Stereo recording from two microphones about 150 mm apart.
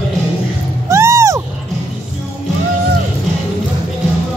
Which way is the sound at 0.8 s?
20° right (ahead or behind).